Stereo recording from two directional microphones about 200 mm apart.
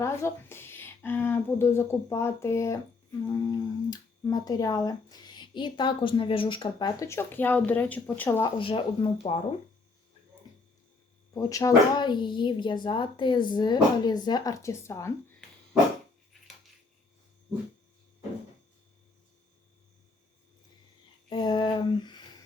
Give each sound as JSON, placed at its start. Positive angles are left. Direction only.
{"t": 0.0, "sound": "speech", "side_deg": 15}
{"t": 8.4, "sound": "speech", "side_deg": 20}
{"t": 11.3, "sound": "speech", "side_deg": 15}
{"t": 21.2, "sound": "a sound", "side_deg": 20}